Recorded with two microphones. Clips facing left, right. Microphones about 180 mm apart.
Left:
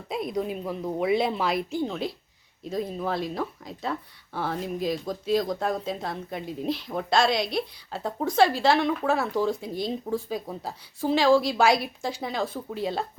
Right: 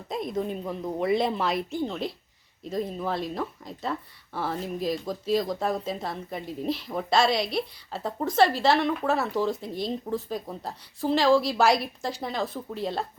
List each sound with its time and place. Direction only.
0.1 s speech: 5° left (ahead or behind)